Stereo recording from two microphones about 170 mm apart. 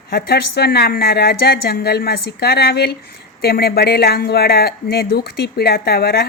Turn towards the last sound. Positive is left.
turn(degrees=65)  # may be behind; listen again after turning